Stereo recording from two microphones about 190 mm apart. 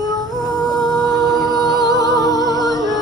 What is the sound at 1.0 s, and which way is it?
Singing, centre (ahead or behind).